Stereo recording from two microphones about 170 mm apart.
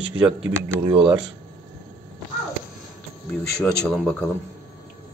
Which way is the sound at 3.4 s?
5° left (ahead or behind).